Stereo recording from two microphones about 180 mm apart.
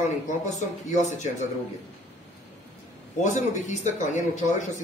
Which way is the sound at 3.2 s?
40° left (ahead or behind).